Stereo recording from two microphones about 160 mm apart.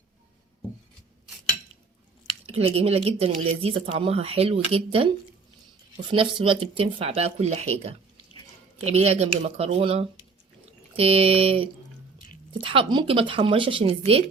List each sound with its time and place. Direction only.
2.5 s speech: 40° right (ahead or behind)